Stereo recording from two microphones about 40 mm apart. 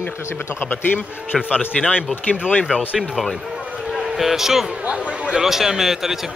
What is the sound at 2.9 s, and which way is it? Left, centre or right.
Speech, centre.